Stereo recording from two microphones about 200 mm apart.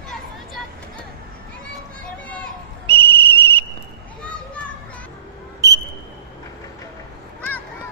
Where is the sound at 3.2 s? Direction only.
10° left (ahead or behind).